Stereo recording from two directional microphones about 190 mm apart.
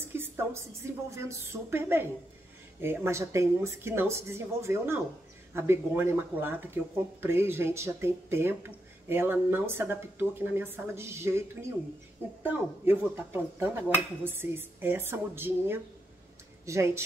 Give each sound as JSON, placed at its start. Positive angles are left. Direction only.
{"t": 0.0, "sound": "music", "side_deg": -10}
{"t": 1.1, "sound": "speech", "side_deg": -15}
{"t": 12.4, "sound": "speech", "side_deg": -10}